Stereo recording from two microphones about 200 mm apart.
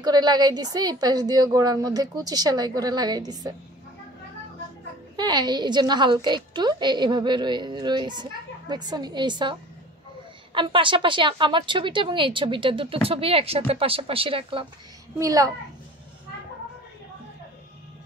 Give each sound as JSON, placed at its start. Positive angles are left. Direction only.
{"t": 0.0, "sound": "a woman's voice", "side_deg": -20}
{"t": 5.1, "sound": "a woman's voice", "side_deg": -20}